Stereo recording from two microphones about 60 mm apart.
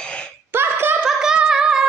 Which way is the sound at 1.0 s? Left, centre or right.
Centre.